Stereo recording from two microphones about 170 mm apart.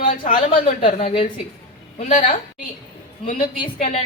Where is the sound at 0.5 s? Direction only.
30° left (ahead or behind).